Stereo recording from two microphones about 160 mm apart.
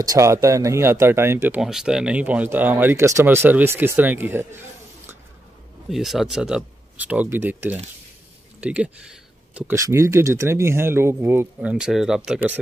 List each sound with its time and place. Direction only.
0.0 s speech: 20° right (ahead or behind)
5.9 s speech: centre (ahead or behind)
8.5 s a sound: 10° right (ahead or behind)
9.8 s speech: 20° right (ahead or behind)